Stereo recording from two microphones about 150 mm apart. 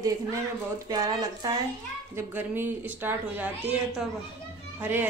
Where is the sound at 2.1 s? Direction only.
15° right (ahead or behind).